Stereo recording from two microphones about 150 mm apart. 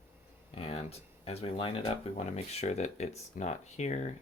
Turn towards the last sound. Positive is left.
turn(degrees=50)  # may be behind; listen again after turning